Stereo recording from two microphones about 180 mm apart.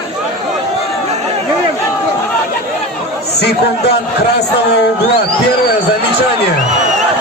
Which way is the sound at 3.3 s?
65° left (ahead or behind).